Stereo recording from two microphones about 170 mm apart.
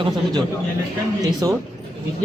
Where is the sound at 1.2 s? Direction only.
20° right (ahead or behind).